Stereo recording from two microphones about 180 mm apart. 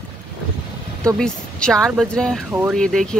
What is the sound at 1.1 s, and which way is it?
Speech, 5° left (ahead or behind).